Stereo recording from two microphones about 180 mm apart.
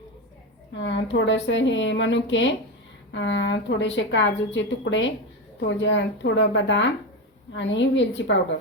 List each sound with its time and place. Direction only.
0.8 s a woman's voice: 90° left